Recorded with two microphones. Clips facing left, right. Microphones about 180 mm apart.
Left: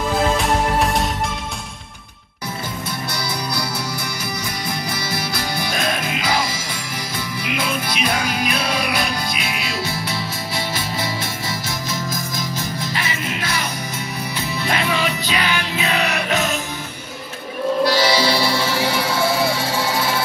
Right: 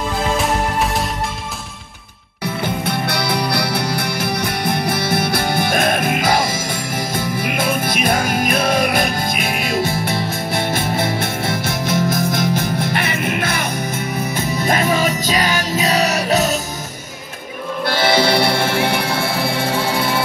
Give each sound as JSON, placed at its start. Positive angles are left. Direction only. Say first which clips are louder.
{"t": 0.4, "sound": "music", "louder": "even", "side_deg": 0}
{"t": 2.4, "sound": "music", "louder": "right 7 dB", "side_deg": -65}
{"t": 17.8, "sound": "music", "louder": "right 4 dB", "side_deg": -55}